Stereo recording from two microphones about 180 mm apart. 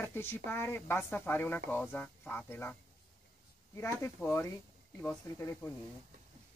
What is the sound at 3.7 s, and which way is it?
A woman's voice, 15° left (ahead or behind).